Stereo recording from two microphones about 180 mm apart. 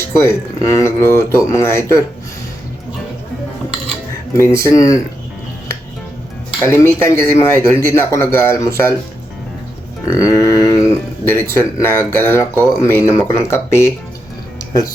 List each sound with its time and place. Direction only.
0.0 s speech: 15° left (ahead or behind)
4.4 s speech: 15° left (ahead or behind)
6.6 s speech: 15° left (ahead or behind)
10.1 s speech: 15° left (ahead or behind)